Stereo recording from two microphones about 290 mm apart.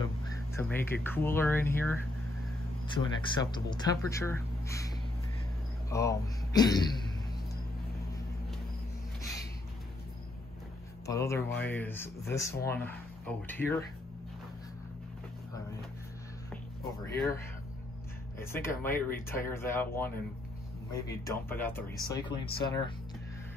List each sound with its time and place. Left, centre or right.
0.6 s speech: centre
3.0 s speech: centre
11.1 s speech: centre
17.0 s speech: centre
18.4 s speech: centre
21.1 s speech: centre